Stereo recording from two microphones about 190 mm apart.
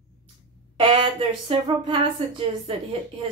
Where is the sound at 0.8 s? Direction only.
25° right (ahead or behind).